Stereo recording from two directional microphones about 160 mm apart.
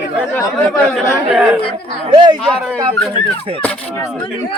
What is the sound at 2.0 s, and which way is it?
Speech, 30° right (ahead or behind).